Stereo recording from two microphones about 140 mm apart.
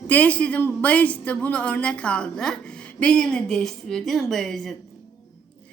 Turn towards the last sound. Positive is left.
turn(degrees=0)  # may be behind; listen again after turning